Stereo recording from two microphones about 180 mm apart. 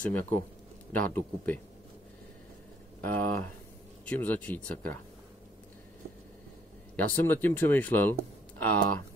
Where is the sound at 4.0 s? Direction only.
10° left (ahead or behind).